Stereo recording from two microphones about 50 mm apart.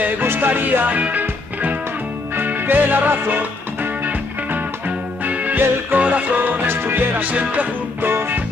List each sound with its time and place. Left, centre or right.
0.2 s music: right
0.8 s music: right
6.7 s music: right
8.0 s music: right